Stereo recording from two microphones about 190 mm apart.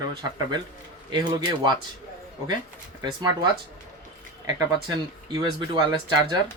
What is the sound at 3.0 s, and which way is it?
Speech, 20° right (ahead or behind).